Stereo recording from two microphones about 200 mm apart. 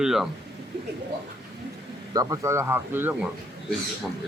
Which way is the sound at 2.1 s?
15° right (ahead or behind).